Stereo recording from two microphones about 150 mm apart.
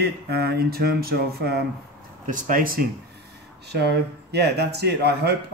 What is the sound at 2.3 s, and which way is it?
Speech, 60° right (ahead or behind).